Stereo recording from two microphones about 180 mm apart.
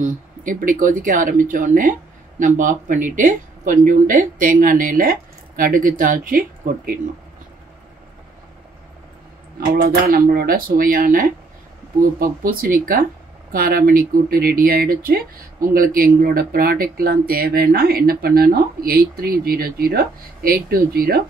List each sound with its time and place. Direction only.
0.0 s speech: 45° right (ahead or behind)
9.8 s speech: 50° right (ahead or behind)